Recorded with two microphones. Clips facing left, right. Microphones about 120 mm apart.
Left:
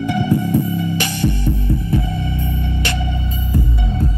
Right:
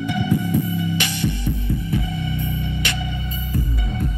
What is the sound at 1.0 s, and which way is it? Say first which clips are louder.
Throbbing: left 4 dB; 40° left (ahead or behind).